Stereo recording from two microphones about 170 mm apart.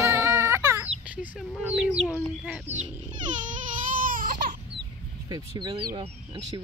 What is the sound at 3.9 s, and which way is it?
Baby cry, 55° right (ahead or behind).